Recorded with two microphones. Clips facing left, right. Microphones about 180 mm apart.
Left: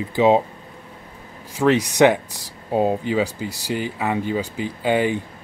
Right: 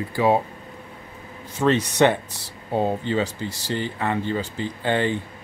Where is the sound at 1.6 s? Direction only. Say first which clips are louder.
Left 3 dB; 10° left (ahead or behind).